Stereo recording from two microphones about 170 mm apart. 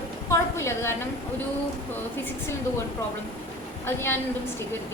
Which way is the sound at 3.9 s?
15° left (ahead or behind).